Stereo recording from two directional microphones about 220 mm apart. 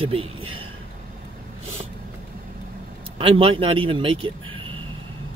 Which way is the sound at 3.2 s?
25° right (ahead or behind).